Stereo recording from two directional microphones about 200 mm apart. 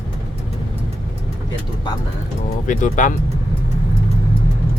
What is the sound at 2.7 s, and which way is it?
Speech, 40° left (ahead or behind).